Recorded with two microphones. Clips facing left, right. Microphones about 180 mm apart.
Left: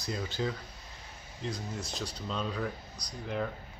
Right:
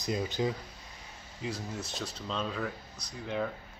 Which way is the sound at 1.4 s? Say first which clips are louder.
Even; 5° right (ahead or behind).